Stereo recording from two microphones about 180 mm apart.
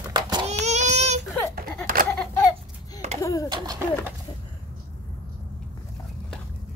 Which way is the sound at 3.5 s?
20° right (ahead or behind).